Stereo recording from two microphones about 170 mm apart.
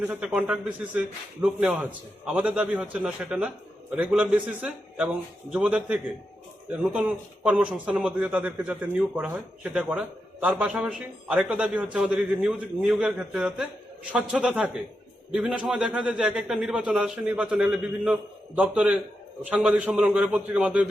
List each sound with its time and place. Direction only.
0.1 s a man's voice: 5° right (ahead or behind)